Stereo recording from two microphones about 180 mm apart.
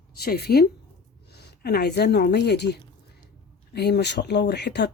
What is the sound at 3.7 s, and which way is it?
Speech, 65° left (ahead or behind).